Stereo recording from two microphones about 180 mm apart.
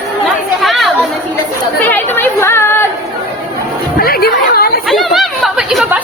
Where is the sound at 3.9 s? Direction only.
55° left (ahead or behind).